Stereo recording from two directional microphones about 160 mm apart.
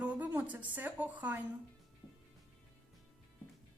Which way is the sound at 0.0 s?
10° right (ahead or behind).